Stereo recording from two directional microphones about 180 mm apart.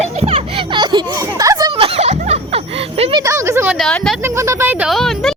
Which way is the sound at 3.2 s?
15° right (ahead or behind).